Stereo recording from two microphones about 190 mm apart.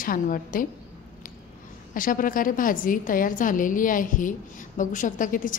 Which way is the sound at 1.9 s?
45° left (ahead or behind).